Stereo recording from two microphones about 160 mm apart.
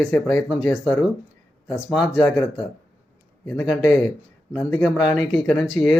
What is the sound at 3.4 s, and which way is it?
Speech, 5° left (ahead or behind).